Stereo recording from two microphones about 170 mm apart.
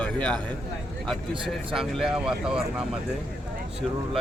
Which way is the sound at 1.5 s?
Centre (ahead or behind).